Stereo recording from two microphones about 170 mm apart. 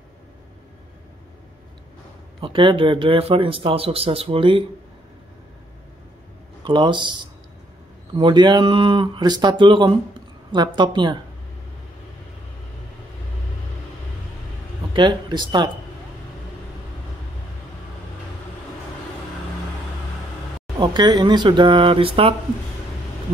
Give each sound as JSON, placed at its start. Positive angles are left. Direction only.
{"t": 2.4, "sound": "speech", "side_deg": -30}
{"t": 6.6, "sound": "speech", "side_deg": -25}
{"t": 15.0, "sound": "speech", "side_deg": -25}
{"t": 20.8, "sound": "speech", "side_deg": -25}